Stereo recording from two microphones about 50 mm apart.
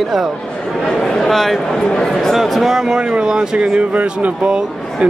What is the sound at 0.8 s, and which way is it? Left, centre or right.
Speech, centre.